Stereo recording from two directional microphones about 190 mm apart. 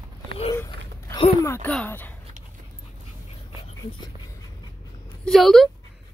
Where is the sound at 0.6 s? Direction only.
15° left (ahead or behind).